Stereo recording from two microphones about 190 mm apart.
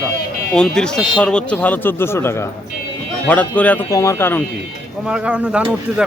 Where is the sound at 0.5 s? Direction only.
5° left (ahead or behind).